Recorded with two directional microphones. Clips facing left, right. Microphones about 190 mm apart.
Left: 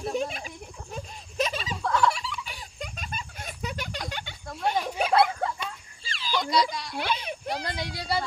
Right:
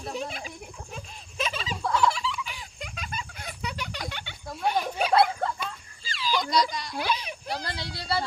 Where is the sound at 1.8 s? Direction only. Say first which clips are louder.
Even; 5° right (ahead or behind).